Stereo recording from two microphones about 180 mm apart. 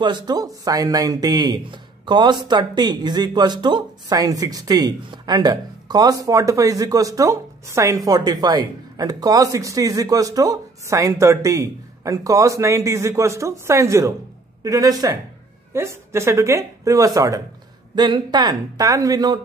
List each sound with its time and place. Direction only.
0.0 s a man's voice: 25° right (ahead or behind)